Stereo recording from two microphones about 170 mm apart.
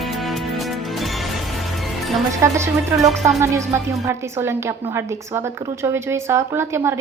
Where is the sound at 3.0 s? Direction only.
Centre (ahead or behind).